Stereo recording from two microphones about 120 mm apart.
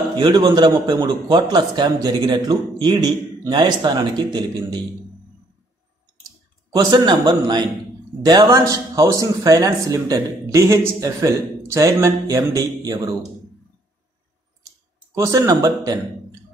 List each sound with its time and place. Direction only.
0.2 s a man's voice: 40° right (ahead or behind)
6.7 s a man's voice: 35° right (ahead or behind)
15.1 s a man's voice: 30° right (ahead or behind)